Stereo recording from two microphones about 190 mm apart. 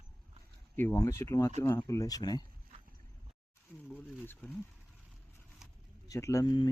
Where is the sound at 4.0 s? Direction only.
10° left (ahead or behind).